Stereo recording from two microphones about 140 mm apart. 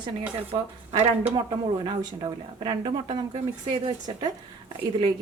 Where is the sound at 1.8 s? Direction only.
35° right (ahead or behind).